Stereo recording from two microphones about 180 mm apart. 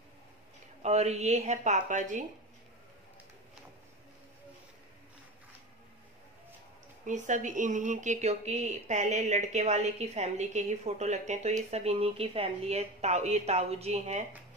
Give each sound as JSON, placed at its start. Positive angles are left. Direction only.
{"t": 0.8, "sound": "speech", "side_deg": -35}
{"t": 7.1, "sound": "speech", "side_deg": -40}